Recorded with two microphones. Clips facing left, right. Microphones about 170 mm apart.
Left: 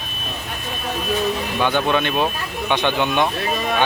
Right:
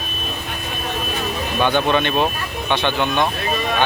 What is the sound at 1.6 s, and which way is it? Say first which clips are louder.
Speech: right 2 dB; 5° left (ahead or behind).